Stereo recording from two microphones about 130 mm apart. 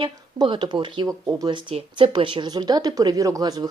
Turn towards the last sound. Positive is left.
turn(degrees=-25)  # may be behind; listen again after turning